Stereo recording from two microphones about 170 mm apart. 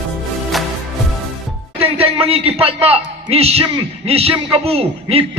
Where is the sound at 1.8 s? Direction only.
35° right (ahead or behind).